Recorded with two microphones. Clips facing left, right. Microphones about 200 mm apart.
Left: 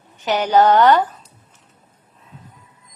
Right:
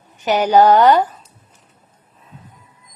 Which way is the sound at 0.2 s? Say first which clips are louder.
Right 3 dB; 10° right (ahead or behind).